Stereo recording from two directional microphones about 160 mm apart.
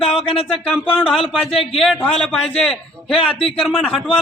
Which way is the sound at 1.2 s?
35° left (ahead or behind).